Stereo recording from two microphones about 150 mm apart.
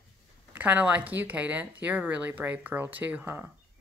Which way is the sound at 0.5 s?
10° right (ahead or behind).